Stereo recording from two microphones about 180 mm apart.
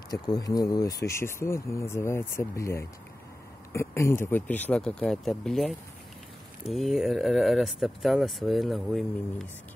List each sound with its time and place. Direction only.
0.1 s speech: 20° left (ahead or behind); by 9.5 s centre (ahead or behind)